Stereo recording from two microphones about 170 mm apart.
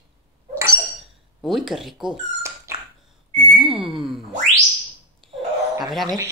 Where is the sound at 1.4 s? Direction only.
5° right (ahead or behind).